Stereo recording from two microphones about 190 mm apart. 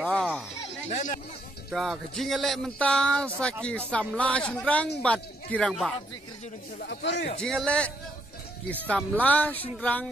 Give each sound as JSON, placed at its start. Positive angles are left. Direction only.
{"t": 0.0, "sound": "a sound", "side_deg": 5}
{"t": 0.8, "sound": "speech", "side_deg": 35}
{"t": 1.7, "sound": "speech", "side_deg": 0}
{"t": 6.9, "sound": "speech", "side_deg": 65}
{"t": 7.4, "sound": "speech", "side_deg": 5}